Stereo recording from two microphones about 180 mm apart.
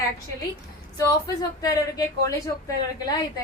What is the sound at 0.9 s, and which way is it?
A woman's voice, 20° left (ahead or behind).